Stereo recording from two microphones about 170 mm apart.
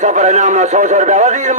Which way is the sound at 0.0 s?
45° right (ahead or behind).